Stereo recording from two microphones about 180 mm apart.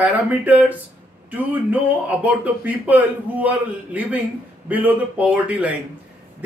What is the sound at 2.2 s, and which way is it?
A man's voice, 10° right (ahead or behind).